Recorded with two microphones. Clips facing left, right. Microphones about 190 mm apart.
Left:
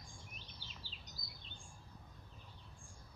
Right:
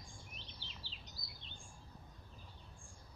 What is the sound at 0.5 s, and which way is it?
Bird vocalization, 45° left (ahead or behind).